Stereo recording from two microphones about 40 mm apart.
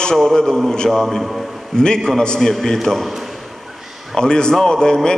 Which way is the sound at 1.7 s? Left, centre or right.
Centre.